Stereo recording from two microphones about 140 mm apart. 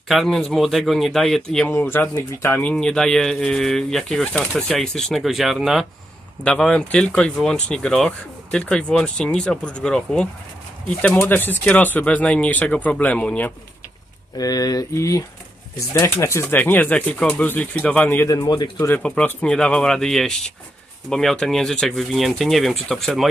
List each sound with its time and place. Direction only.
0.1 s speech: centre (ahead or behind)
14.3 s speech: 25° left (ahead or behind)
18.3 s speech: 25° left (ahead or behind)
19.0 s speech: 10° left (ahead or behind)